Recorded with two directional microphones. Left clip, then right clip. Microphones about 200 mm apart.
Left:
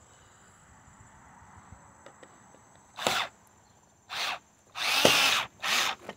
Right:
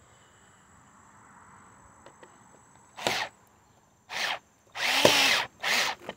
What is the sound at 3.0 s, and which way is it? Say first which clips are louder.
Sneeze: left 1 dB; 10° left (ahead or behind).